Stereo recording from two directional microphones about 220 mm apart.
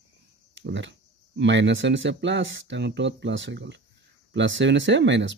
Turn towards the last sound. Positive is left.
turn(degrees=-55)  # may be behind; listen again after turning